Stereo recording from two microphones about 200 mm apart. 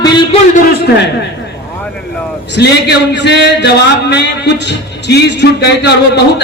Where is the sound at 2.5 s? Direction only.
60° left (ahead or behind).